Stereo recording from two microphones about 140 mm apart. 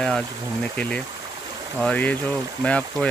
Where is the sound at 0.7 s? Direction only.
10° left (ahead or behind).